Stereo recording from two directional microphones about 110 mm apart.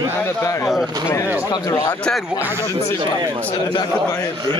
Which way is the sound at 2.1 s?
10° left (ahead or behind).